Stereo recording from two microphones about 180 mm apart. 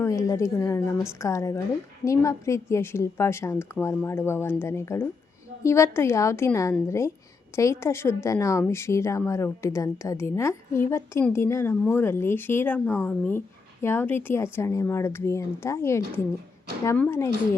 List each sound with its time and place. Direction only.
0.0 s a woman's voice: 15° left (ahead or behind)